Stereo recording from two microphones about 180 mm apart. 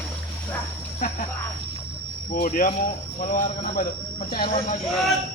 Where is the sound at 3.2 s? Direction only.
50° left (ahead or behind).